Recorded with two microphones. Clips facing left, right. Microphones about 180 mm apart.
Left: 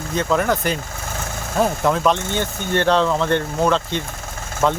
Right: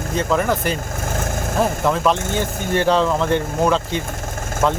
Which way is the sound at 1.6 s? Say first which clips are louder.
Left 1 dB; 5° right (ahead or behind).